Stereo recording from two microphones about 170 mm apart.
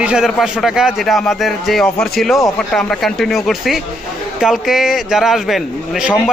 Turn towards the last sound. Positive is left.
turn(degrees=0)  # may be behind; listen again after turning